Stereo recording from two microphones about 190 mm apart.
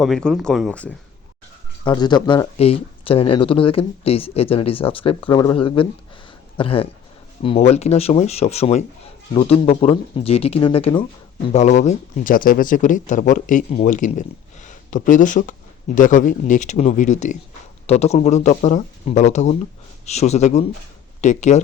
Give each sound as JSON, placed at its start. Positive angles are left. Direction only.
{"t": 0.0, "sound": "speech", "side_deg": 0}
{"t": 1.8, "sound": "speech", "side_deg": 20}
{"t": 11.5, "sound": "speech", "side_deg": 40}